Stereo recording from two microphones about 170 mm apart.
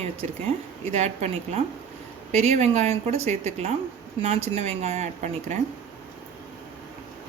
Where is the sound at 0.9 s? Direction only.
40° right (ahead or behind).